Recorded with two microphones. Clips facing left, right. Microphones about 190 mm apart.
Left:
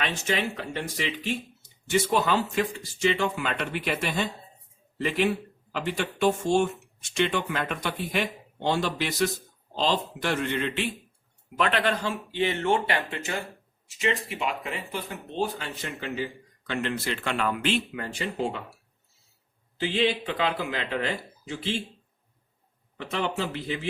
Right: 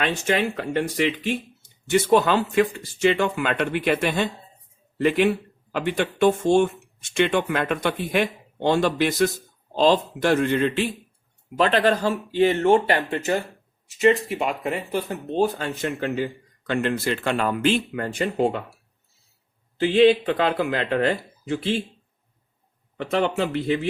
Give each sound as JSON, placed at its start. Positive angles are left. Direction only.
{"t": 0.0, "sound": "speech", "side_deg": -55}
{"t": 19.8, "sound": "speech", "side_deg": -50}
{"t": 23.0, "sound": "speech", "side_deg": -60}